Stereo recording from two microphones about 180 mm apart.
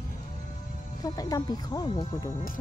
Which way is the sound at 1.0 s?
20° left (ahead or behind).